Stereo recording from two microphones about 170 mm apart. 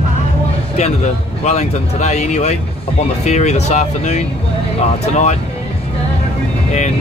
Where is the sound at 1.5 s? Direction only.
40° left (ahead or behind).